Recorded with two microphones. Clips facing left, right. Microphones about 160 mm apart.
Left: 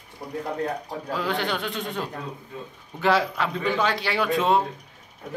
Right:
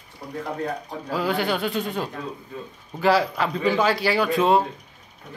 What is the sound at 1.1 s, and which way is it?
Speech, 5° right (ahead or behind).